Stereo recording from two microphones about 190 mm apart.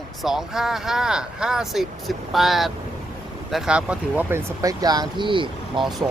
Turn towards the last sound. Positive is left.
turn(degrees=-25)  # may be behind; listen again after turning